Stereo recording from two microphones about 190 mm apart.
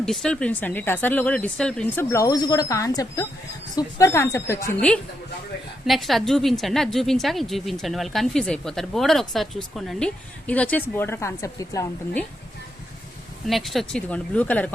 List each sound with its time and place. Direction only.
0.0 s speech: 5° left (ahead or behind)
5.8 s a woman's voice: centre (ahead or behind); by 12.2 s 15° left (ahead or behind)
13.5 s a woman's voice: centre (ahead or behind)